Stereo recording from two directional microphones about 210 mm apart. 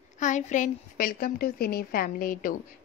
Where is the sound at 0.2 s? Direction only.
35° left (ahead or behind).